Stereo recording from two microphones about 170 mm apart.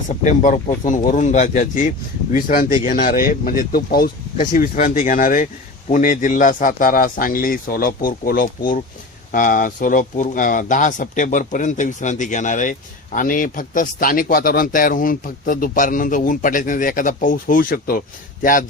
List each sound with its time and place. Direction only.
0.3 s speech: 45° left (ahead or behind)